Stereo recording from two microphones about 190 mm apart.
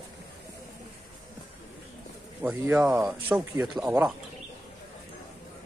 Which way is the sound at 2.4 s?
10° right (ahead or behind).